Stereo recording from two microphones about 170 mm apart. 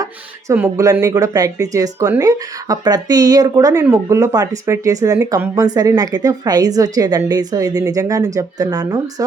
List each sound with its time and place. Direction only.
0.0 s speech: 15° right (ahead or behind)